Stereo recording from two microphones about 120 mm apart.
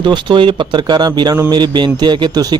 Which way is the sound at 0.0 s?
40° right (ahead or behind).